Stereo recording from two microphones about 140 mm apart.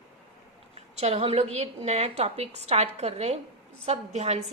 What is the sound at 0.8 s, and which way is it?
A woman's voice, 50° right (ahead or behind).